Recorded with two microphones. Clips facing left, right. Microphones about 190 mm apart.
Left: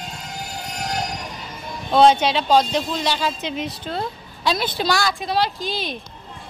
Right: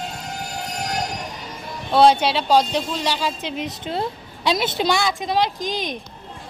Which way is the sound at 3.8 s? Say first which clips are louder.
Right 2 dB; 25° right (ahead or behind).